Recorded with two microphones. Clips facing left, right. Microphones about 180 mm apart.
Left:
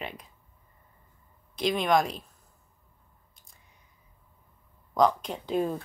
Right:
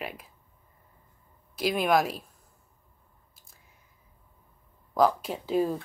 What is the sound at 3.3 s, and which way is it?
Squish, 5° right (ahead or behind).